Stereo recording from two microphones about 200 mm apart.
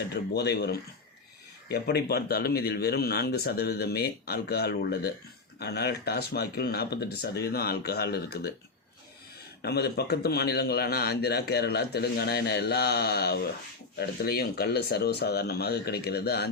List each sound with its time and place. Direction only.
0.1 s a man's voice: 55° left (ahead or behind)
9.6 s a man's voice: 55° left (ahead or behind)